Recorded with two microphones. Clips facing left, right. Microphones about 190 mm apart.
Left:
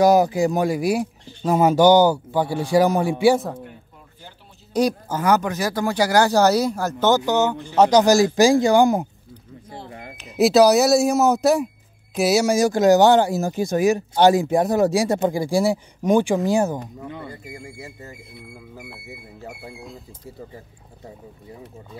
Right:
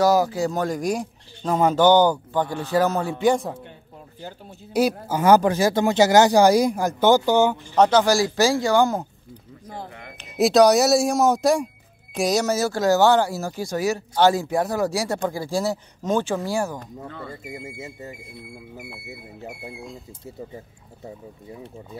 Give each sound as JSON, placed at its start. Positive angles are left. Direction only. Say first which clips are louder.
{"t": 0.0, "sound": "speech", "louder": "left 3 dB", "side_deg": 15}
{"t": 4.7, "sound": "speech", "louder": "even", "side_deg": -5}
{"t": 5.2, "sound": "speech", "louder": "right 4 dB", "side_deg": -30}
{"t": 7.7, "sound": "speech", "louder": "left 2 dB", "side_deg": 5}
{"t": 8.0, "sound": "speech", "louder": "left 4 dB", "side_deg": 20}
{"t": 9.8, "sound": "a sound", "louder": "left 3 dB", "side_deg": 30}
{"t": 10.1, "sound": "speech", "louder": "left 1 dB", "side_deg": 0}
{"t": 17.3, "sound": "speech", "louder": "right 2 dB", "side_deg": -25}